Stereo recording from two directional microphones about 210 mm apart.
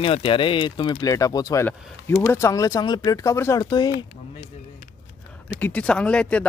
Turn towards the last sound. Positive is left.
turn(degrees=5)  # may be behind; listen again after turning